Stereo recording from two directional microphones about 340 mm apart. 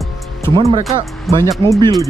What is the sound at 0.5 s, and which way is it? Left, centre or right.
Speech, centre.